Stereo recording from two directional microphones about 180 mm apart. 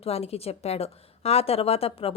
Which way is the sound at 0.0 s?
35° left (ahead or behind).